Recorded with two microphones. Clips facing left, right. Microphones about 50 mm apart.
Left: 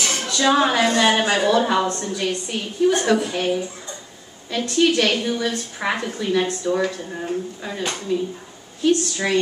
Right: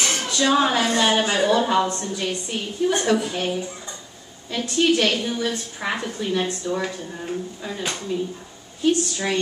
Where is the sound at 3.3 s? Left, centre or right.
Centre.